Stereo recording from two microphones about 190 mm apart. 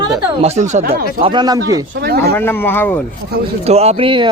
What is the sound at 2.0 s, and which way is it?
Speech, 55° right (ahead or behind).